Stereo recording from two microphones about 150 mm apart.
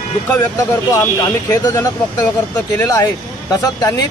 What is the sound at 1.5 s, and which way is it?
Speech, 25° left (ahead or behind).